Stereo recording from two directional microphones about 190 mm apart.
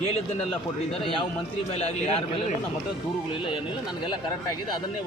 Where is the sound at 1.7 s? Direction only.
35° left (ahead or behind).